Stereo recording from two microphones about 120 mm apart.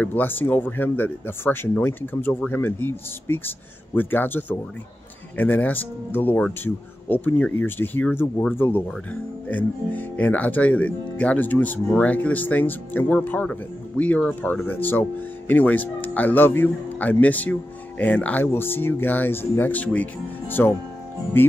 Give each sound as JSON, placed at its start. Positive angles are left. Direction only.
{"t": 0.0, "sound": "speech", "side_deg": 15}